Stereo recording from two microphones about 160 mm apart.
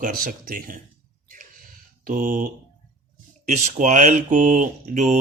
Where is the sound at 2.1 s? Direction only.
60° right (ahead or behind).